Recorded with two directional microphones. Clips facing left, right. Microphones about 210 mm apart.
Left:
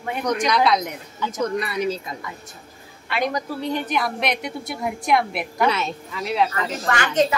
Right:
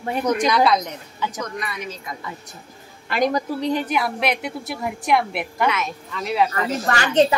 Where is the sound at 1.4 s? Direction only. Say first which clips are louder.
Left 7 dB; 35° left (ahead or behind).